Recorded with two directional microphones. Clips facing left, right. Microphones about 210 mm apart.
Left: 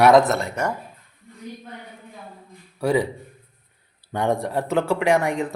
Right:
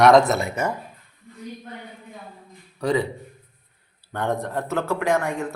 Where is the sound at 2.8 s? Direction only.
10° left (ahead or behind).